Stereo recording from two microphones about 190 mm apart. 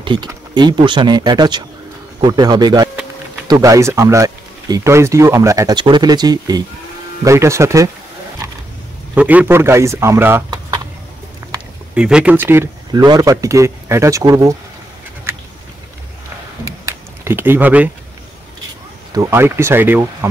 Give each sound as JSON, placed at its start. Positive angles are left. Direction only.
{"t": 0.0, "sound": "speech", "side_deg": -25}
{"t": 9.1, "sound": "speech", "side_deg": -10}
{"t": 11.9, "sound": "speech", "side_deg": -5}
{"t": 16.6, "sound": "a sound", "side_deg": -15}
{"t": 19.1, "sound": "speech", "side_deg": -15}